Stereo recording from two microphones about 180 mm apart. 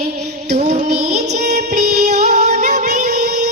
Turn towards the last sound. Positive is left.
turn(degrees=-40)  # may be behind; listen again after turning